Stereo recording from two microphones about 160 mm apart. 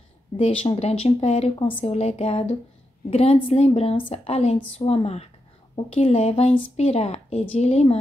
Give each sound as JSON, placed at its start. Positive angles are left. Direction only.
{"t": 0.4, "sound": "a woman's voice", "side_deg": 40}